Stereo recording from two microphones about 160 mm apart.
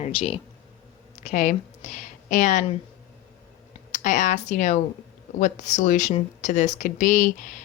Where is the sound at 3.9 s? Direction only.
50° left (ahead or behind).